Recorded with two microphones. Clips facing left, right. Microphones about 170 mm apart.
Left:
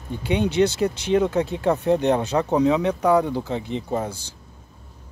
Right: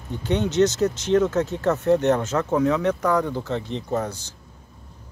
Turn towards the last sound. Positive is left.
turn(degrees=10)  # may be behind; listen again after turning